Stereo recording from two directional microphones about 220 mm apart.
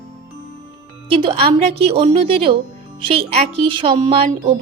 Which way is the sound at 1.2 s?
25° right (ahead or behind).